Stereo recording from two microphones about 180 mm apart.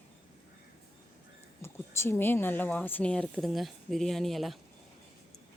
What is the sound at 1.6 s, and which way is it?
Speech, 15° left (ahead or behind).